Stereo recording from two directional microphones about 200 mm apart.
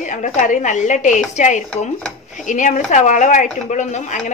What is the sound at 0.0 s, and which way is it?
Speech, 40° left (ahead or behind).